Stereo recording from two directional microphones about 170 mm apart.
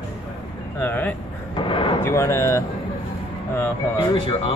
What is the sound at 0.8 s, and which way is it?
Speech, 10° left (ahead or behind).